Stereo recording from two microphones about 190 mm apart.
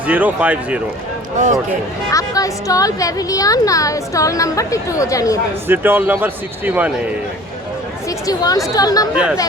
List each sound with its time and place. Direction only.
0.1 s speech: 10° right (ahead or behind)
2.0 s speech: 20° left (ahead or behind)
5.6 s speech: 10° right (ahead or behind)
8.3 s speech: 20° left (ahead or behind)
9.1 s speech: 5° right (ahead or behind)